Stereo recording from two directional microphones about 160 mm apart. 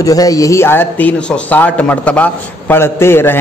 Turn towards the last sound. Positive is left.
turn(degrees=15)  # may be behind; listen again after turning